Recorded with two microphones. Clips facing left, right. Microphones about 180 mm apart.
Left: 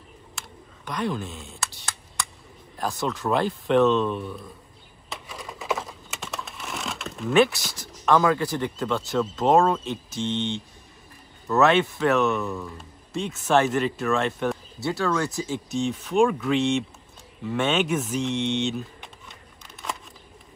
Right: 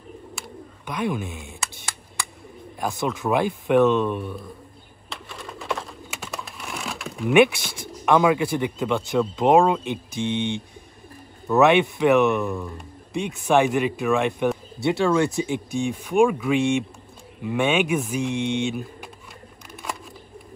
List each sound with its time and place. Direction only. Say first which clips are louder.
0.4 s bird: right 5 dB; 5° right (ahead or behind)
2.8 s speech: right 2 dB; 15° right (ahead or behind)
5.1 s typing: right 1 dB; centre (ahead or behind)
8.0 s speech: right 2 dB; 15° right (ahead or behind)
18.1 s a sound: right 1 dB; 10° right (ahead or behind)